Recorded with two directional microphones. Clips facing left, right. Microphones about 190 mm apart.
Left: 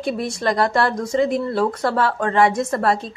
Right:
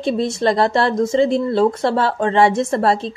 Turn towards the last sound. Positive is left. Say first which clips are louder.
# right 3 dB
turn(degrees=-25)  # may be behind; listen again after turning